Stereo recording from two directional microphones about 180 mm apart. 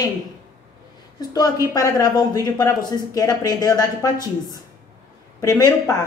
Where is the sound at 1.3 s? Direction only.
20° left (ahead or behind).